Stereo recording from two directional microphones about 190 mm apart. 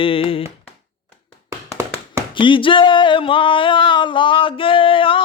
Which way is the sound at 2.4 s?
25° left (ahead or behind).